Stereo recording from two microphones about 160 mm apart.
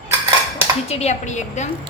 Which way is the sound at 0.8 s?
40° left (ahead or behind).